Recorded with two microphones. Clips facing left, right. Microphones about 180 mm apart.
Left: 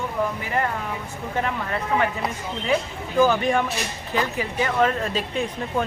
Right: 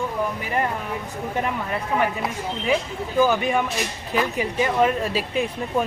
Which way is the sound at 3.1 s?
5° right (ahead or behind).